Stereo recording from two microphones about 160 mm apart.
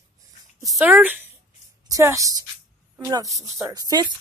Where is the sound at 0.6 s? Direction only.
15° right (ahead or behind).